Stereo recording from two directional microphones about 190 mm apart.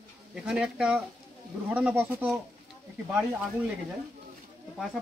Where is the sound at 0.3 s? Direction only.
5° right (ahead or behind).